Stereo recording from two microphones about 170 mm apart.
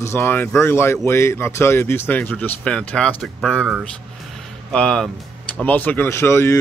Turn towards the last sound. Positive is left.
turn(degrees=15)  # may be behind; listen again after turning